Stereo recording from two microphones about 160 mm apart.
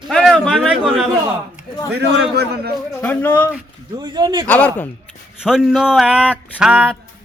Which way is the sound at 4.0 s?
25° right (ahead or behind).